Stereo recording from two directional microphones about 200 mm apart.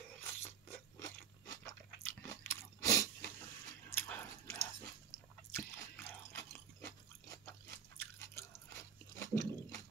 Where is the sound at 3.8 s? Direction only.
10° left (ahead or behind).